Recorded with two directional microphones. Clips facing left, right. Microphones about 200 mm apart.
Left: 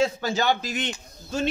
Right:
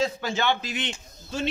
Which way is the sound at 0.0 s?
40° left (ahead or behind).